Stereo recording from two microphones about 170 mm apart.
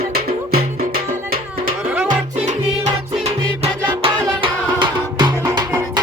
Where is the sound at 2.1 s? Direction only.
45° right (ahead or behind); by 6.0 s 20° right (ahead or behind).